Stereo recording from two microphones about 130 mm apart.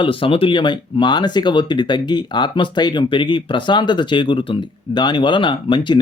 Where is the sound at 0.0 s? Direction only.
45° left (ahead or behind).